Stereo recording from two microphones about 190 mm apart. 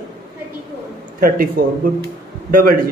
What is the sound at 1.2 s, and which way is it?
A man's voice, 50° right (ahead or behind).